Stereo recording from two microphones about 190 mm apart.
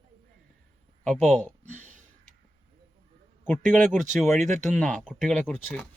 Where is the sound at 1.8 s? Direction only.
40° right (ahead or behind).